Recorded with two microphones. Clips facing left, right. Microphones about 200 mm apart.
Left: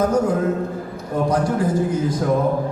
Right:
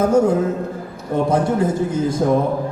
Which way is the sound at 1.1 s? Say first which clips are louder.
Right 2 dB; 25° right (ahead or behind).